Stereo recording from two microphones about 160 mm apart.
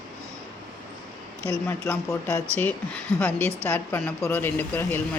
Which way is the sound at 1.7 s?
15° left (ahead or behind).